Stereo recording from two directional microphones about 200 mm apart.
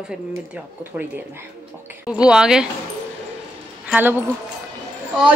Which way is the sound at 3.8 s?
10° right (ahead or behind).